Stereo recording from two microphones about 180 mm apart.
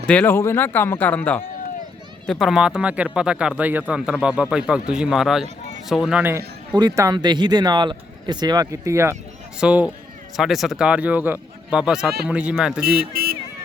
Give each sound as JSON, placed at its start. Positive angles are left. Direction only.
{"t": 0.1, "sound": "speech", "side_deg": 10}
{"t": 9.6, "sound": "speech", "side_deg": -5}
{"t": 12.8, "sound": "speech", "side_deg": -60}